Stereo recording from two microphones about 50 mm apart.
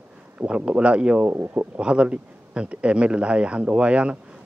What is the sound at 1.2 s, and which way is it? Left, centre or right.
Speech, right.